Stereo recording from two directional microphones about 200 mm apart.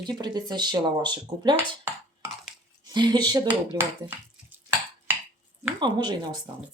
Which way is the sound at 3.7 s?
10° right (ahead or behind).